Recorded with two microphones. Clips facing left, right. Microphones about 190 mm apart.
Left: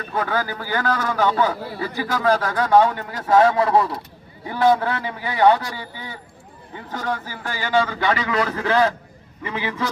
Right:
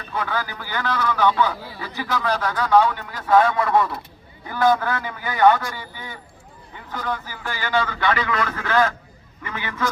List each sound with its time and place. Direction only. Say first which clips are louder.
0.0 s a man's voice: left 3 dB; 45° left (ahead or behind)
7.4 s a man's voice: left 3 dB; 35° left (ahead or behind)